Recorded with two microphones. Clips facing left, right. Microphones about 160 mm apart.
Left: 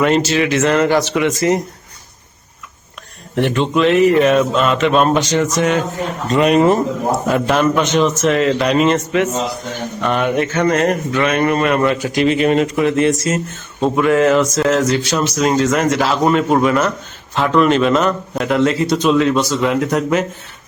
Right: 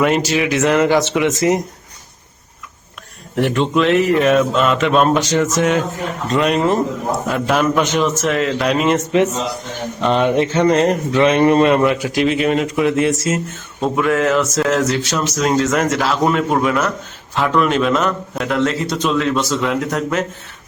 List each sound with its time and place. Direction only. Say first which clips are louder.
0.0 s speech: left 1 dB; 10° right (ahead or behind)
3.3 s speech: even; centre (ahead or behind)
10.0 s a man's voice: right 2 dB; 25° right (ahead or behind)
11.8 s speech: even; 5° right (ahead or behind)